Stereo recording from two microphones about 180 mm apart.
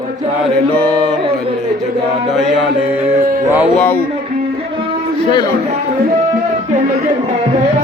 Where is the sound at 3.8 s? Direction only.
10° left (ahead or behind).